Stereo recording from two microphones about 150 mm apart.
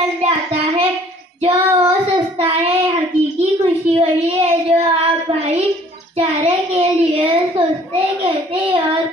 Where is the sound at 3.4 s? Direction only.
40° right (ahead or behind).